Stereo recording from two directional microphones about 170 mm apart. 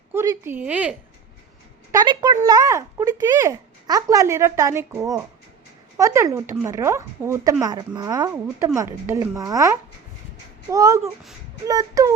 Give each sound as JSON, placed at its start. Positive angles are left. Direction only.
{"t": 0.1, "sound": "speech", "side_deg": -15}
{"t": 1.9, "sound": "speech", "side_deg": -25}